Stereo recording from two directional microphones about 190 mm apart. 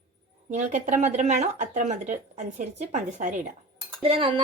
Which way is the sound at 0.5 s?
40° right (ahead or behind).